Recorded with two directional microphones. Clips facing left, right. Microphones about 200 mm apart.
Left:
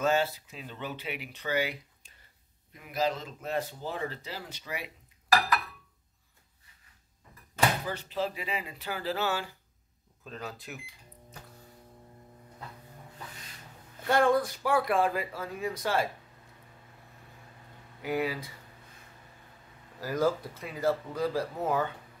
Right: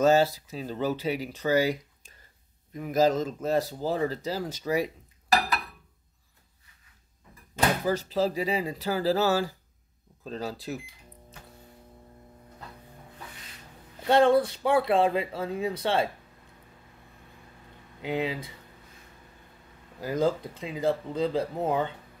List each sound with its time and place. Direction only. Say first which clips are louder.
0.0 s speech: right 6 dB; 40° right (ahead or behind)
7.8 s speech: right 7 dB; 40° right (ahead or behind)
14.0 s speech: right 4 dB; 25° right (ahead or behind)
18.0 s speech: right 1 dB; 20° right (ahead or behind)
20.0 s speech: right 2 dB; 20° right (ahead or behind)